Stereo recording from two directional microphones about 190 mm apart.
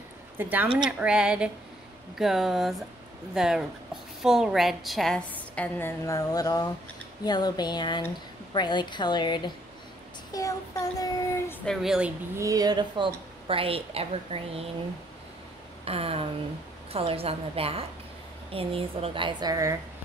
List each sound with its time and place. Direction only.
0.4 s a woman's voice: 10° right (ahead or behind); by 9.5 s 25° left (ahead or behind)
10.3 s child singing: 20° left (ahead or behind)
11.6 s a woman's voice: centre (ahead or behind)
12.4 s a woman's voice: 20° right (ahead or behind)
15.8 s a sound: 30° right (ahead or behind)
16.9 s a woman's voice: 30° right (ahead or behind)